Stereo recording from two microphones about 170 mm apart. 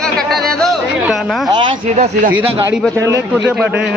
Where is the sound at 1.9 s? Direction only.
45° right (ahead or behind).